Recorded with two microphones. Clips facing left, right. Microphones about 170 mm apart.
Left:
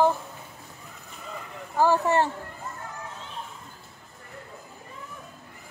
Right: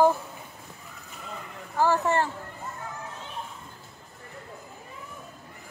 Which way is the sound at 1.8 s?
15° left (ahead or behind).